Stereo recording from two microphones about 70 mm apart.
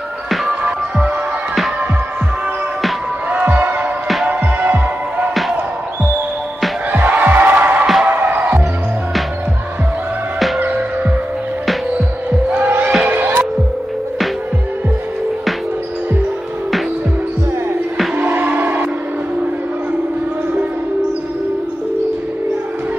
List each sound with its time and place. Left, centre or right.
0.5 s music: centre
3.3 s music: right
6.9 s music: right
12.3 s basketball bounce: right
13.0 s music: right
18.1 s music: right